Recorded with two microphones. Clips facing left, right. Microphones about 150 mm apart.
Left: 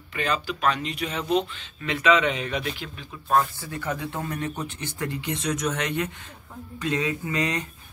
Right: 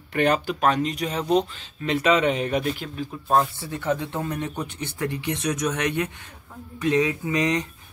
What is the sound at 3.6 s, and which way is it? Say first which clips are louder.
Speech: right 5 dB; 25° right (ahead or behind).